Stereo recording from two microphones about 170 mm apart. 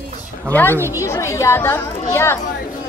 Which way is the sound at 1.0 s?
15° left (ahead or behind).